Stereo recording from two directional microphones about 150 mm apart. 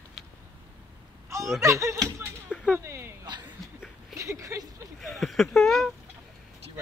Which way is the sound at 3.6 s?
Centre (ahead or behind).